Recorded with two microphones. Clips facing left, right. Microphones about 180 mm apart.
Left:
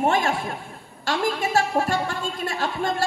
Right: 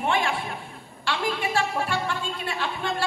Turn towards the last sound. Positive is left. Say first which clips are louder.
# left 4 dB
turn(degrees=45)  # may be behind; listen again after turning